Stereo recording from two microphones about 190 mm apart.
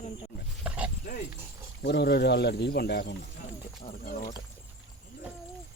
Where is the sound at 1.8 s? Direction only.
60° left (ahead or behind).